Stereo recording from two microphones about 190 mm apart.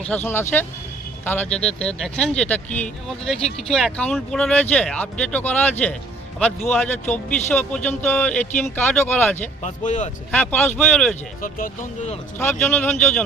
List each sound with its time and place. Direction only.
0.0 s speech: 10° left (ahead or behind)
9.6 s speech: 40° left (ahead or behind)
10.3 s speech: 5° left (ahead or behind)
11.4 s speech: 45° left (ahead or behind)
12.4 s speech: 10° left (ahead or behind)